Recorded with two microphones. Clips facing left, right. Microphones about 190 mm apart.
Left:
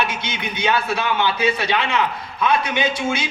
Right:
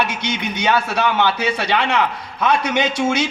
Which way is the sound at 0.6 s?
70° right (ahead or behind).